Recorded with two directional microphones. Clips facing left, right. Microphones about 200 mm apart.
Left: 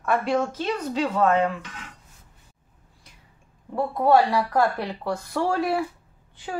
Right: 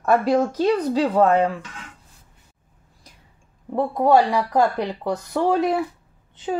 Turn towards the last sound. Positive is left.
turn(degrees=-20)  # may be behind; listen again after turning